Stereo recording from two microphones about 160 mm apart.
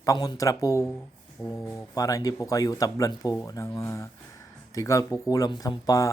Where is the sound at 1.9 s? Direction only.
20° left (ahead or behind).